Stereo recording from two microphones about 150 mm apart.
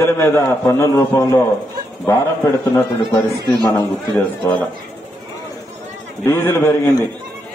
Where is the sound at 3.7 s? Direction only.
10° left (ahead or behind).